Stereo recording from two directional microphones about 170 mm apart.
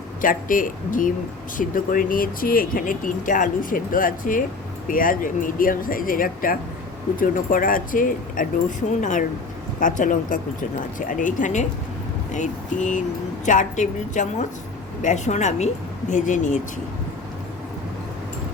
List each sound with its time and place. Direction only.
0.2 s speech: 55° left (ahead or behind)